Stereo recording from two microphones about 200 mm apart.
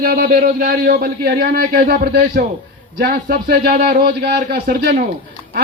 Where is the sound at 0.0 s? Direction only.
50° right (ahead or behind).